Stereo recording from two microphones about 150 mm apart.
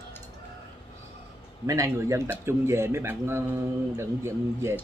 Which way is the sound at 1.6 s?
20° right (ahead or behind).